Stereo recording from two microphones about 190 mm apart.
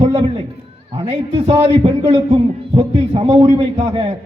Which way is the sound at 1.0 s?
30° right (ahead or behind).